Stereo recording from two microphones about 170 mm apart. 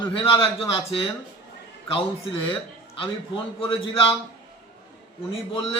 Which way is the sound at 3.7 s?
30° left (ahead or behind).